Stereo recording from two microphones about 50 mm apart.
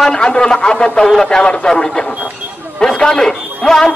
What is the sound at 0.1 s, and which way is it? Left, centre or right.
A man's voice, centre.